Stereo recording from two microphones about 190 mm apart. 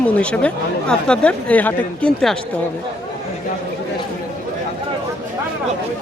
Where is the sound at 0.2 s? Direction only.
5° left (ahead or behind).